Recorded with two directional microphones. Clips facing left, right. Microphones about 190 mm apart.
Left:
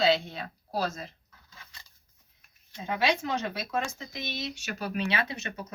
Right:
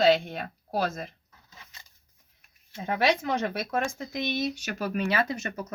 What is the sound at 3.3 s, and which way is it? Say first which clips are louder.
Speech: right 3 dB; 55° right (ahead or behind).